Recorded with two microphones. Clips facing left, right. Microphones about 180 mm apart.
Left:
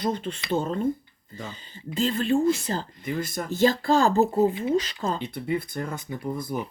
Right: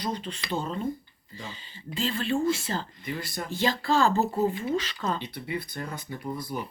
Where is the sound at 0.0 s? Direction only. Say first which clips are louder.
Left 5 dB; 50° left (ahead or behind).